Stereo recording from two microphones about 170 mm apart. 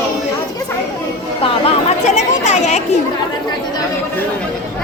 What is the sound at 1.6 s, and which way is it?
Speech, 40° left (ahead or behind).